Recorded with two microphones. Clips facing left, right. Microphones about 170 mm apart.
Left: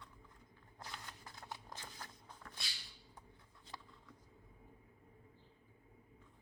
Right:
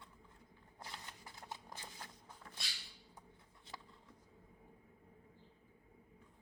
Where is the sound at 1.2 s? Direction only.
15° right (ahead or behind).